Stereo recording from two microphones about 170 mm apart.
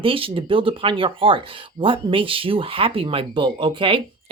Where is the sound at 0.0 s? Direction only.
30° right (ahead or behind).